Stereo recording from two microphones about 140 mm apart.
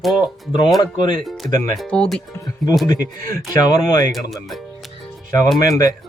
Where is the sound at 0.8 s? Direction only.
35° left (ahead or behind).